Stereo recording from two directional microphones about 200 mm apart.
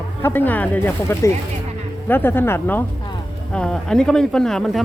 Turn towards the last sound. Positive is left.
turn(degrees=0)  # may be behind; listen again after turning